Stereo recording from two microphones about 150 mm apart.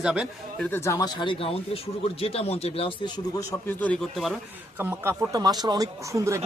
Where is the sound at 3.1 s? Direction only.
25° left (ahead or behind).